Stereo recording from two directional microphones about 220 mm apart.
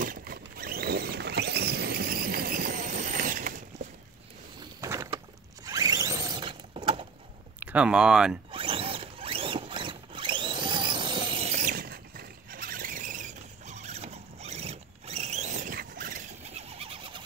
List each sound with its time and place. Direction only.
0.0 s rodents: 40° right (ahead or behind)
4.7 s rowboat: 15° right (ahead or behind)
5.7 s a sound: 15° right (ahead or behind)
7.6 s speech: 5° right (ahead or behind)
8.5 s zipper: 25° right (ahead or behind); by 16.2 s 40° right (ahead or behind)
16.7 s bird: 25° right (ahead or behind)